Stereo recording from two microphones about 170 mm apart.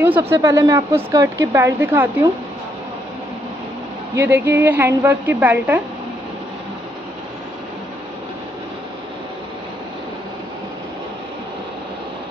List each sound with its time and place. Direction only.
0.0 s speech: 15° right (ahead or behind)
4.1 s speech: 15° right (ahead or behind)